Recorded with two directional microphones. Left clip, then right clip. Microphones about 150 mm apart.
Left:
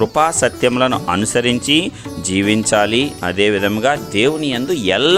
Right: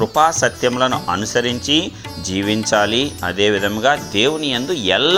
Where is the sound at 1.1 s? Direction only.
65° left (ahead or behind).